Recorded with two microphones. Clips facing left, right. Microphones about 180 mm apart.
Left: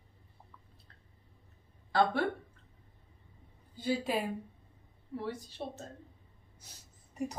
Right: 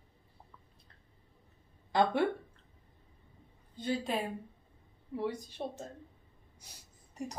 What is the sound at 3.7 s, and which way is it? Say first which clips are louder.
Speech: left 1 dB; 5° left (ahead or behind).